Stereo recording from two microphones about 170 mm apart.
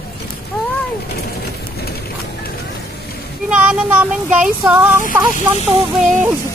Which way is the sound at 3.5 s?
5° right (ahead or behind).